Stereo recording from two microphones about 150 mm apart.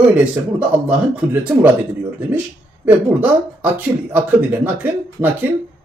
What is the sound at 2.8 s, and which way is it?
Speech, 10° right (ahead or behind).